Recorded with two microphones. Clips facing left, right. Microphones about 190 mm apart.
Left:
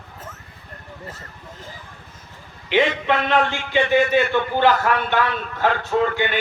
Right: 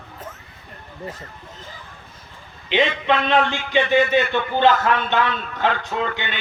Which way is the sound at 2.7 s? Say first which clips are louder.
Left 1 dB; 20° right (ahead or behind).